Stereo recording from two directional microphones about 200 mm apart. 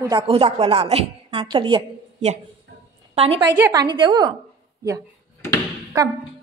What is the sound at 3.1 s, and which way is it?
Speech, 30° right (ahead or behind).